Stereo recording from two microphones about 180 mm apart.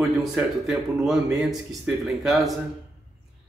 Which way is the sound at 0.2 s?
Centre (ahead or behind).